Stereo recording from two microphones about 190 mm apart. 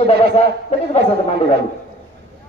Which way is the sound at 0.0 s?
35° left (ahead or behind).